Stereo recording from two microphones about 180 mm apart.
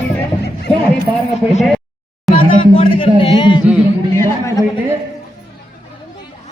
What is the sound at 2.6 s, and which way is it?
A man's voice, 30° left (ahead or behind).